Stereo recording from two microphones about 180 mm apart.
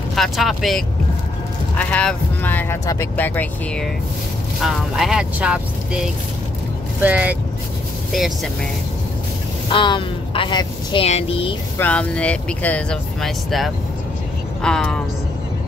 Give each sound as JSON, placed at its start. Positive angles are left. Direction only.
{"t": 0.1, "sound": "speech", "side_deg": 0}
{"t": 9.7, "sound": "speech", "side_deg": 25}
{"t": 11.8, "sound": "speech", "side_deg": 5}